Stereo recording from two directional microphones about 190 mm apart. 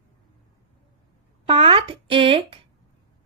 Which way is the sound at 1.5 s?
30° right (ahead or behind).